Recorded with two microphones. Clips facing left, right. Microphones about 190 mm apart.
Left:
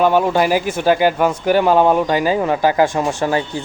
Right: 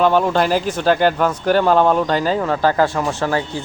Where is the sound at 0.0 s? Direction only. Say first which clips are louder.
Left 1 dB; 10° left (ahead or behind).